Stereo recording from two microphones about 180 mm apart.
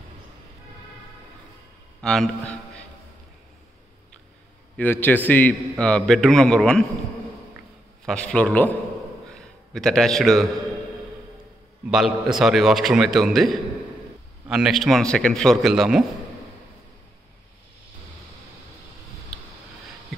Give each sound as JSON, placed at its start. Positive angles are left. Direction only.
{"t": 2.0, "sound": "a man's voice", "side_deg": 5}
{"t": 4.7, "sound": "a man's voice", "side_deg": 10}
{"t": 8.0, "sound": "a man's voice", "side_deg": 5}
{"t": 11.9, "sound": "a man's voice", "side_deg": 0}